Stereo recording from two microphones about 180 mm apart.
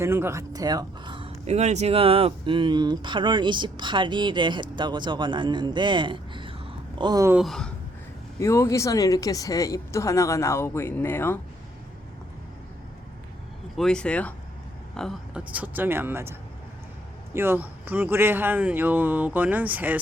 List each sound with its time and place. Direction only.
0.0 s speech: 15° right (ahead or behind)
7.3 s speech: centre (ahead or behind)
8.4 s speech: 15° left (ahead or behind)
13.7 s speech: 5° left (ahead or behind); by 16.3 s 10° right (ahead or behind)
17.3 s speech: 10° right (ahead or behind)